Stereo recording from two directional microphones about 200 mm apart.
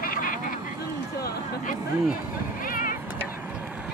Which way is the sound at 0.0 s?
45° left (ahead or behind).